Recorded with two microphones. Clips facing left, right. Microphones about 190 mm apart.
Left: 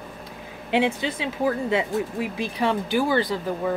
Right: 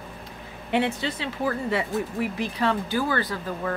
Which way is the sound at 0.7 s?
15° left (ahead or behind).